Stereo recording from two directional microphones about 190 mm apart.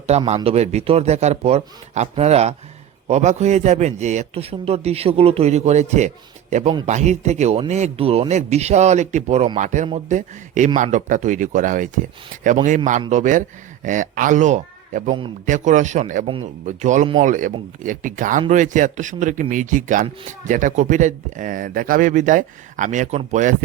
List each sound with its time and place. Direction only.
0.1 s speech: 35° right (ahead or behind)
16.2 s speech: 25° right (ahead or behind)
16.6 s speech: 40° right (ahead or behind)